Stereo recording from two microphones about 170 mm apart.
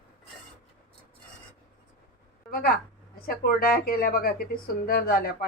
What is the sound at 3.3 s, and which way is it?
Speech, 60° left (ahead or behind).